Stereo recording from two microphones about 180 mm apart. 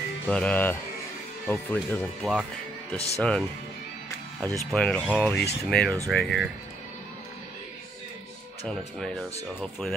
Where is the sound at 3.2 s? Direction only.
5° left (ahead or behind).